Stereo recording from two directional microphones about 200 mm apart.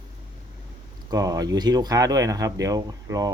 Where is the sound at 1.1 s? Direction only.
20° right (ahead or behind).